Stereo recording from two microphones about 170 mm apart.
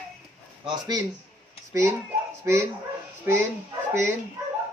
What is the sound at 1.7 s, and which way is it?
Speech, 15° right (ahead or behind).